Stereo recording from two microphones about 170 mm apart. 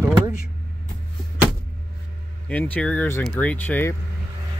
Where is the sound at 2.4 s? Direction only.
10° left (ahead or behind).